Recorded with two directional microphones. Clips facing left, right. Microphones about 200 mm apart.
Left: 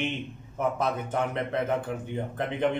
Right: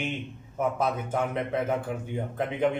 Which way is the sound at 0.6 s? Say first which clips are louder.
Even; 5° right (ahead or behind).